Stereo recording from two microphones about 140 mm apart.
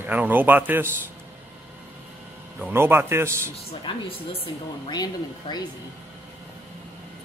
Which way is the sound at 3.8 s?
40° left (ahead or behind).